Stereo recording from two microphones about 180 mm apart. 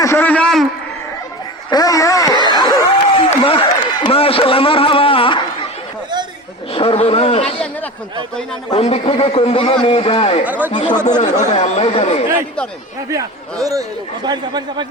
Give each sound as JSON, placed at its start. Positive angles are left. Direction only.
{"t": 0.0, "sound": "a sound", "side_deg": 15}
{"t": 1.7, "sound": "speech", "side_deg": 20}
{"t": 2.5, "sound": "a sound", "side_deg": 25}
{"t": 6.7, "sound": "a man's voice", "side_deg": 35}
{"t": 8.7, "sound": "a man's voice", "side_deg": 35}
{"t": 10.4, "sound": "speech", "side_deg": -10}
{"t": 11.3, "sound": "a man's voice", "side_deg": 40}
{"t": 13.1, "sound": "speech", "side_deg": -20}